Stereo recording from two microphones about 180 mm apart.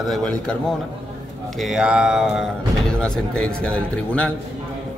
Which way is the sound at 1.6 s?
5° right (ahead or behind).